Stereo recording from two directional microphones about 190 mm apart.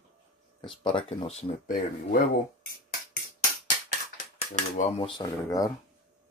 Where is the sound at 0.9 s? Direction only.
35° left (ahead or behind); by 3.0 s 50° left (ahead or behind).